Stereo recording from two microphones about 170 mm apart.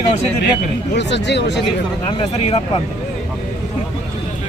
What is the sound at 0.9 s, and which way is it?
Speech, 90° left.